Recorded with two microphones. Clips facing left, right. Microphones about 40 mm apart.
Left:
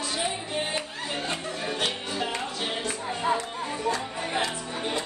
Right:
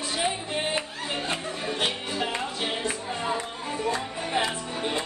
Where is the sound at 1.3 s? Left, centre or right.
Centre.